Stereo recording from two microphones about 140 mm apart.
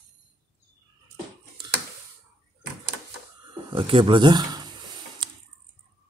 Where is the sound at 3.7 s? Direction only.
40° right (ahead or behind).